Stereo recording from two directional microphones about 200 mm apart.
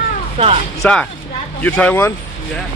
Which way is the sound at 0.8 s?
5° left (ahead or behind).